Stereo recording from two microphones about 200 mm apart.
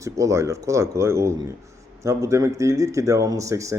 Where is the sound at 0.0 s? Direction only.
15° right (ahead or behind).